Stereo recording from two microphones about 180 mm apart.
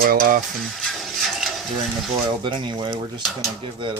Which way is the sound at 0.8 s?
Centre (ahead or behind).